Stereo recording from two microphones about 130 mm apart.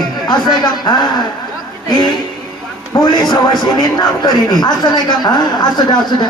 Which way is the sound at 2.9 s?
30° left (ahead or behind).